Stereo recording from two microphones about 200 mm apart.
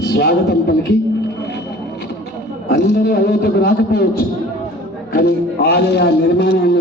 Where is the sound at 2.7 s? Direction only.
55° left (ahead or behind).